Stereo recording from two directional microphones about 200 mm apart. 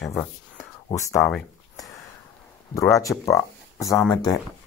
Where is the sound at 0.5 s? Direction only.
35° left (ahead or behind).